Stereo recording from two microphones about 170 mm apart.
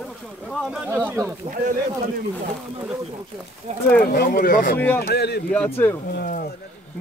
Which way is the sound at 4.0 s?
60° left (ahead or behind).